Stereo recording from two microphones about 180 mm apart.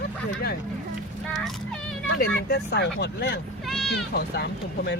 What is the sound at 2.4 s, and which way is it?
Speech, 65° left (ahead or behind).